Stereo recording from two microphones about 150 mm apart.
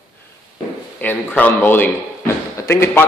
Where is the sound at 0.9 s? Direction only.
10° left (ahead or behind).